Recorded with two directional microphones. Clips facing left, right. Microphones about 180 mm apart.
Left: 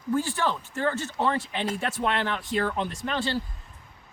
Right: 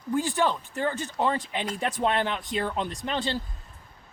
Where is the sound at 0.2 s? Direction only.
15° right (ahead or behind).